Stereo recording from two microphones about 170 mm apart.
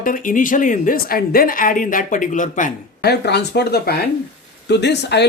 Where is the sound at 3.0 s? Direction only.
75° left (ahead or behind).